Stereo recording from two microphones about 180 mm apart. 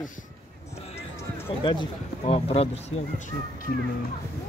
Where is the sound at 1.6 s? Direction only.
25° left (ahead or behind).